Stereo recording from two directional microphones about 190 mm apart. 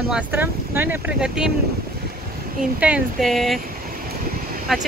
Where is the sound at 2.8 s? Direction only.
Centre (ahead or behind).